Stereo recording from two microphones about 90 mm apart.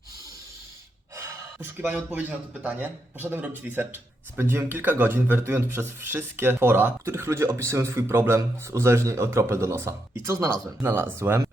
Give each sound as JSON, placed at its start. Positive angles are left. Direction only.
{"t": 1.5, "sound": "speech", "side_deg": -20}